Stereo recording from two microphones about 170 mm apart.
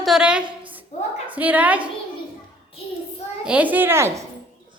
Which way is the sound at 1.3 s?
10° right (ahead or behind).